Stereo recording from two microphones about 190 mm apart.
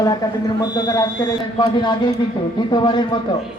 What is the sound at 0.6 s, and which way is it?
A man's voice, 20° left (ahead or behind).